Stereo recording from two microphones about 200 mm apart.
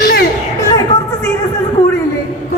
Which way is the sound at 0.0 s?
55° left (ahead or behind).